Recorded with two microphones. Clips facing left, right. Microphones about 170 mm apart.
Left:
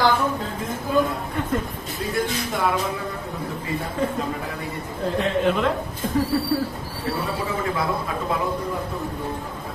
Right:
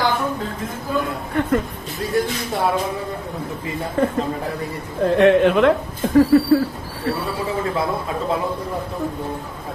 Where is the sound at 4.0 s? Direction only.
60° right (ahead or behind).